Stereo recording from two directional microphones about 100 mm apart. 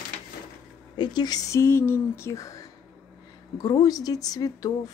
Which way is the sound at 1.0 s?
45° left (ahead or behind).